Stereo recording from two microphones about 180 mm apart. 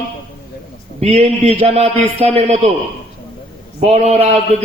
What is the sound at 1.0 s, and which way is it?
A man's voice, 35° right (ahead or behind).